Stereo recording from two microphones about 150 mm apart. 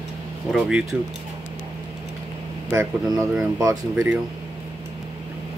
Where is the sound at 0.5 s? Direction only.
5° right (ahead or behind).